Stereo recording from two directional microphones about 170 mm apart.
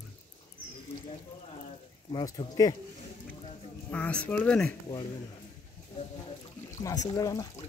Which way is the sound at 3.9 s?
5° left (ahead or behind).